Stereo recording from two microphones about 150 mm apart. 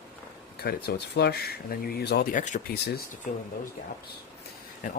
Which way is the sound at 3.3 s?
60° left (ahead or behind).